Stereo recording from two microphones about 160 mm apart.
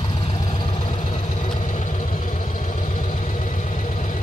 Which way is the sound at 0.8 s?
50° left (ahead or behind).